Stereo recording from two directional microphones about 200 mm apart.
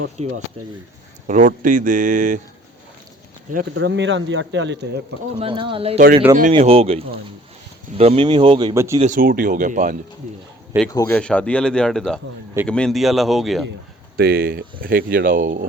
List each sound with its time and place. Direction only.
0.2 s speech: 35° right (ahead or behind)
3.8 s speech: 65° right (ahead or behind)
5.4 s speech: 25° right (ahead or behind)
9.0 s speech: 40° right (ahead or behind)
10.9 s speech: 15° left (ahead or behind)
14.2 s speech: 50° right (ahead or behind)